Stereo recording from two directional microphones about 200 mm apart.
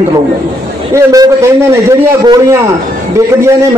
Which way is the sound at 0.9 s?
15° right (ahead or behind).